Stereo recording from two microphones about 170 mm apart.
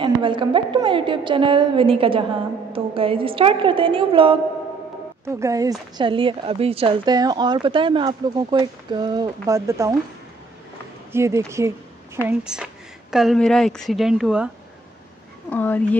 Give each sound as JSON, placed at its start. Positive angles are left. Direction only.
{"t": 0.0, "sound": "a woman's voice", "side_deg": -30}
{"t": 5.2, "sound": "speech", "side_deg": -15}
{"t": 11.1, "sound": "speech", "side_deg": -15}
{"t": 12.3, "sound": "a woman's voice", "side_deg": -5}
{"t": 15.5, "sound": "speech", "side_deg": 10}